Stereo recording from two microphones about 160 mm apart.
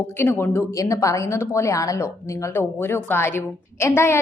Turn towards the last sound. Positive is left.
turn(degrees=15)  # may be behind; listen again after turning